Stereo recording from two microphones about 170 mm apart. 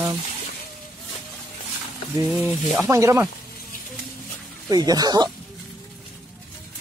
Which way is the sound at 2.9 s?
15° right (ahead or behind).